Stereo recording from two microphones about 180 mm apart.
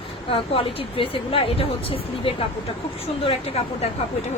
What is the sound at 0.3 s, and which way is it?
Speech, 30° left (ahead or behind).